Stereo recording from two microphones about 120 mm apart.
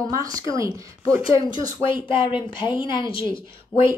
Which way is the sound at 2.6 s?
40° left (ahead or behind).